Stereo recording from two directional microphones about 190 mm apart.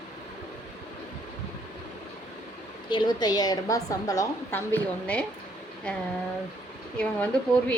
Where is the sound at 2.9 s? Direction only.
20° left (ahead or behind).